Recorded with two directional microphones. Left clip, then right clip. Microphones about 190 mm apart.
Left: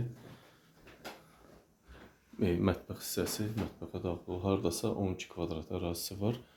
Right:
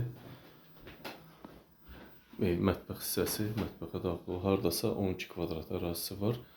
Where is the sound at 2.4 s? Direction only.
10° left (ahead or behind).